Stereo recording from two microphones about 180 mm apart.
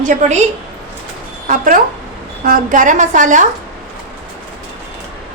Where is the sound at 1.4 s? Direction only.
45° right (ahead or behind).